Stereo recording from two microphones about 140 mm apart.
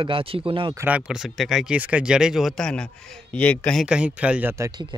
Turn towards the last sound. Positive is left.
turn(degrees=-20)  # may be behind; listen again after turning